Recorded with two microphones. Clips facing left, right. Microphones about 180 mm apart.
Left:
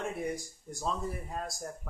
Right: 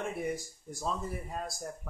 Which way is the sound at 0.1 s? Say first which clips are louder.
Even; centre (ahead or behind).